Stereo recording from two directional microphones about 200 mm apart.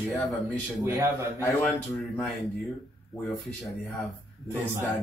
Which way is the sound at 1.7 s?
Centre (ahead or behind).